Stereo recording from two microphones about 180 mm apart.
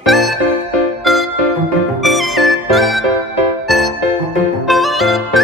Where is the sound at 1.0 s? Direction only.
Centre (ahead or behind).